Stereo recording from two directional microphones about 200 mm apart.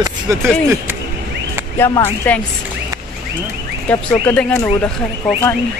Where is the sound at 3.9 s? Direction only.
10° left (ahead or behind).